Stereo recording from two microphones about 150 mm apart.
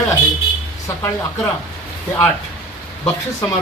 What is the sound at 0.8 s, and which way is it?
Speech, 15° left (ahead or behind).